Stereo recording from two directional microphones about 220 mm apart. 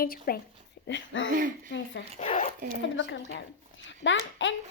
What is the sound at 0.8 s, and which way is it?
Speech, 55° left (ahead or behind).